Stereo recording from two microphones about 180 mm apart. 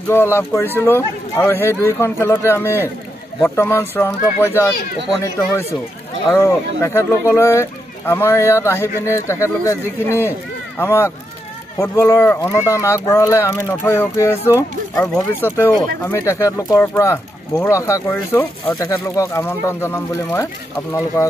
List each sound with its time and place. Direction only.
0.1 s speech: 15° left (ahead or behind)
6.3 s speech: 15° left (ahead or behind)